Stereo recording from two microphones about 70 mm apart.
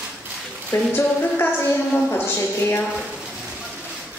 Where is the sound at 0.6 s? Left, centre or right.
Left.